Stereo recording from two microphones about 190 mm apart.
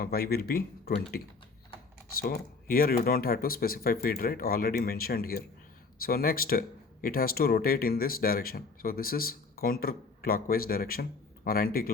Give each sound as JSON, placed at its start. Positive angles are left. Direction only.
{"t": 0.0, "sound": "speech", "side_deg": 50}
{"t": 2.2, "sound": "speech", "side_deg": 50}